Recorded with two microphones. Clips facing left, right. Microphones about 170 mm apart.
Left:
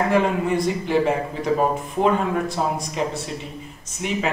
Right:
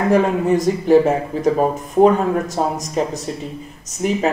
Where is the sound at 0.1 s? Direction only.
40° right (ahead or behind).